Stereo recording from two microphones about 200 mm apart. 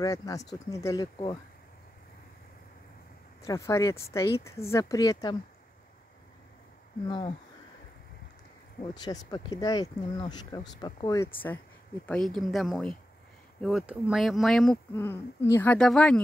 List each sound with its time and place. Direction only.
0.0 s speech: 15° left (ahead or behind)
3.4 s speech: 15° left (ahead or behind)
7.1 s speech: 20° left (ahead or behind)
8.8 s speech: 20° left (ahead or behind); by 16.2 s 5° left (ahead or behind)